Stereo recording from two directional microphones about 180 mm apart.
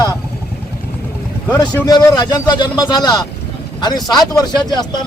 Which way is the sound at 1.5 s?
20° left (ahead or behind).